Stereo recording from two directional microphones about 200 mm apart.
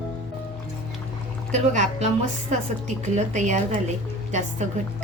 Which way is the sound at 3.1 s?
35° right (ahead or behind).